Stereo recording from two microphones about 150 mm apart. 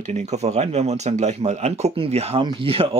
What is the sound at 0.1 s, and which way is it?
Speech, 50° right (ahead or behind).